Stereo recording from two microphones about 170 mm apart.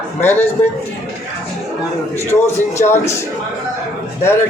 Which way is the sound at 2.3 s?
15° left (ahead or behind).